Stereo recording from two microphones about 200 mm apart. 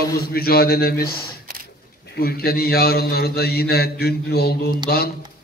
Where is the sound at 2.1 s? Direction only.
50° left (ahead or behind).